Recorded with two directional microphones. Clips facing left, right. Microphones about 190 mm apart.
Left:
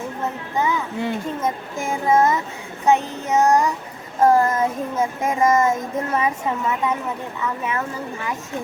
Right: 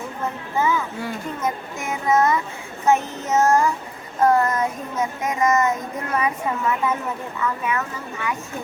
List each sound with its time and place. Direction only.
0.5 s a child's voice: 15° left (ahead or behind)
2.8 s child singing: 15° left (ahead or behind)
4.2 s a child's voice: 25° left (ahead or behind)